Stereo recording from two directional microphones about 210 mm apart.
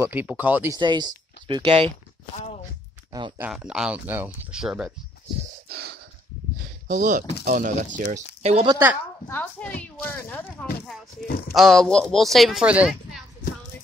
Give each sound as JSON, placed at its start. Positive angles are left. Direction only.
{"t": 0.0, "sound": "speech", "side_deg": -10}
{"t": 0.7, "sound": "speech", "side_deg": -20}
{"t": 2.3, "sound": "speech", "side_deg": 30}
{"t": 3.1, "sound": "a sound", "side_deg": -20}
{"t": 3.3, "sound": "speech", "side_deg": -5}
{"t": 6.9, "sound": "speech", "side_deg": -40}
{"t": 9.3, "sound": "speech", "side_deg": 5}
{"t": 11.2, "sound": "speech", "side_deg": 45}
{"t": 11.5, "sound": "speech", "side_deg": 0}